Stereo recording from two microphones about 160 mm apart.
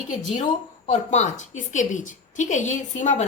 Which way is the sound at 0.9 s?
45° left (ahead or behind).